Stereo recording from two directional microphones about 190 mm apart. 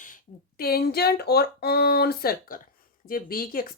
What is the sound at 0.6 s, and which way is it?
Speech, 55° left (ahead or behind).